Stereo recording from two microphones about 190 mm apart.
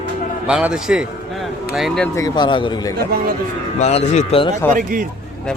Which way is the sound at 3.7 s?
35° left (ahead or behind).